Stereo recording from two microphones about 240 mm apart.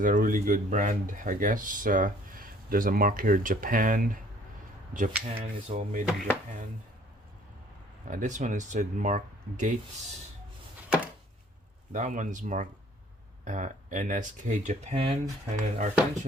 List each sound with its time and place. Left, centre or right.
0.0 s speech: right
8.0 s speech: right
11.9 s speech: right